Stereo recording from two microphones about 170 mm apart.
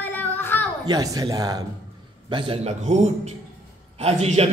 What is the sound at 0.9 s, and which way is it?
A man's voice, 20° right (ahead or behind).